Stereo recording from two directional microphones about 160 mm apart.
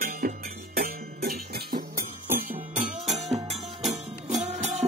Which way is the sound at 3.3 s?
45° right (ahead or behind).